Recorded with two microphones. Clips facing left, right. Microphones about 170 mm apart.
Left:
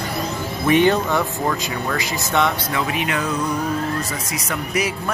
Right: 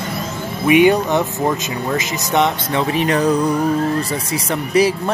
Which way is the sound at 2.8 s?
35° right (ahead or behind).